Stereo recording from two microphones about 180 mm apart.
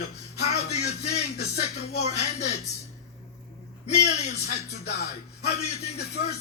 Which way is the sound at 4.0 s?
40° left (ahead or behind).